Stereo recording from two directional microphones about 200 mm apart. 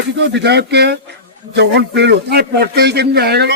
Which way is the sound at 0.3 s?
55° right (ahead or behind).